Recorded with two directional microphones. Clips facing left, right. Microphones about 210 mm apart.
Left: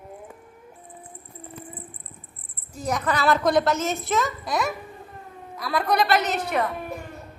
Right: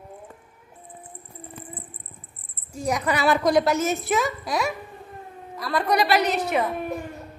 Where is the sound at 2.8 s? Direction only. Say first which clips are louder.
Right 1 dB; 15° right (ahead or behind).